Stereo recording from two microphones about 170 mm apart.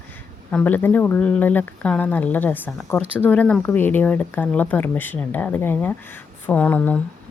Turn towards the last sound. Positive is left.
turn(degrees=10)  # may be behind; listen again after turning